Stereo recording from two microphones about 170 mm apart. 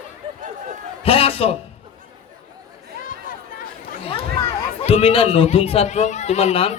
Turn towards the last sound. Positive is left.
turn(degrees=35)  # may be behind; listen again after turning